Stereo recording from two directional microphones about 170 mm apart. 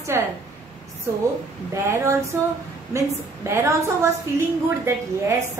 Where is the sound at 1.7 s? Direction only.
15° right (ahead or behind).